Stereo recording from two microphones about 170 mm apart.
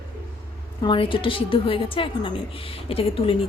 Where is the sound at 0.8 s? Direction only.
30° left (ahead or behind).